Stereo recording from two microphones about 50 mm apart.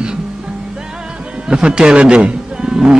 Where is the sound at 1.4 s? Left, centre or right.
Centre.